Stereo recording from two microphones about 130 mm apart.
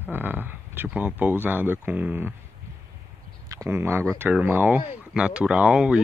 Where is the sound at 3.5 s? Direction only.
20° right (ahead or behind).